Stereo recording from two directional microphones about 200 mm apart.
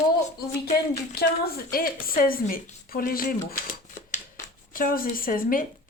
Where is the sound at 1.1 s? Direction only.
50° left (ahead or behind).